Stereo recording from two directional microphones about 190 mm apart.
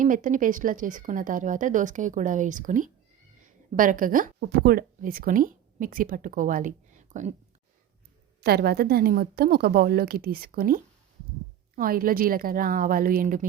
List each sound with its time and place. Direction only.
0.0 s speech: 45° right (ahead or behind)
8.4 s speech: 55° right (ahead or behind)